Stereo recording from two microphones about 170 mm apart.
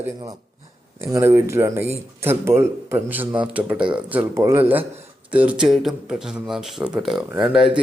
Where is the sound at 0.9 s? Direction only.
15° right (ahead or behind).